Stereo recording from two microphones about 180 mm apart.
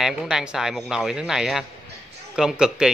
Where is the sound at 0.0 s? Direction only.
Centre (ahead or behind).